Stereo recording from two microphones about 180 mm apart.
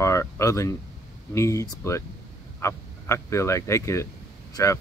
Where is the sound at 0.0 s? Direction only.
15° left (ahead or behind).